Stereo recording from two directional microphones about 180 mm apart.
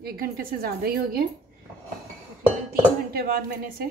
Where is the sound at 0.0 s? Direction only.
55° right (ahead or behind).